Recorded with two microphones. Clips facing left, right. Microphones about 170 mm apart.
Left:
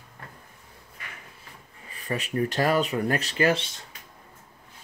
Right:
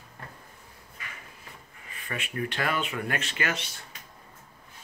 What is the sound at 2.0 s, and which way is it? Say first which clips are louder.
Speech: left 6 dB; 35° left (ahead or behind).